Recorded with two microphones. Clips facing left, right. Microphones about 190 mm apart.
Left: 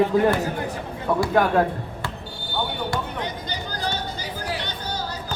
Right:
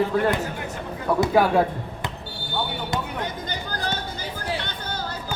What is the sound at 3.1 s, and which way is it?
Chatter, 50° right (ahead or behind).